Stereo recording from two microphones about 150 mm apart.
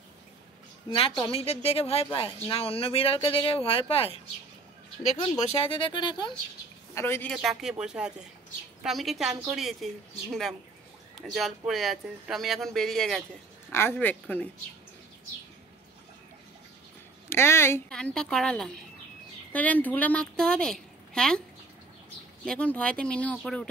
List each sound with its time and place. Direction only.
0.8 s speech: 35° left (ahead or behind)
5.4 s speech: 40° left (ahead or behind)
7.0 s a woman's voice: 15° left (ahead or behind)
7.4 s speech: 5° right (ahead or behind)
11.1 s speech: centre (ahead or behind)
13.7 s a woman's voice: 15° left (ahead or behind)
17.3 s a woman's voice: 15° left (ahead or behind)
17.8 s a woman's voice: 5° left (ahead or behind)
22.4 s a woman's voice: 10° left (ahead or behind)